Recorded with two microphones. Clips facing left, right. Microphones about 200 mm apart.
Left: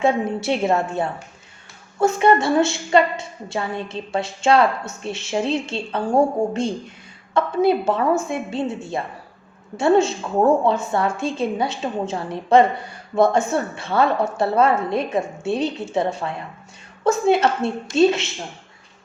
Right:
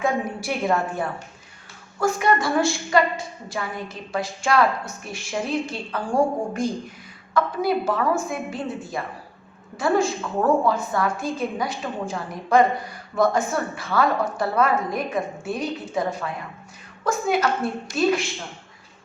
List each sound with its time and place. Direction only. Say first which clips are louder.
0.0 s a woman's voice: left 5 dB; 25° left (ahead or behind)